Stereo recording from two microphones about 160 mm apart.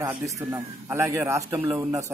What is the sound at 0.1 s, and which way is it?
A man's voice, 20° right (ahead or behind).